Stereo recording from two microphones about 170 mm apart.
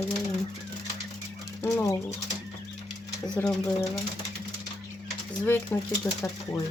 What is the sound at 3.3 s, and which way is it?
Speech, 5° left (ahead or behind).